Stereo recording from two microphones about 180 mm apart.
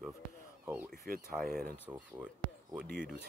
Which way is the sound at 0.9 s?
55° right (ahead or behind).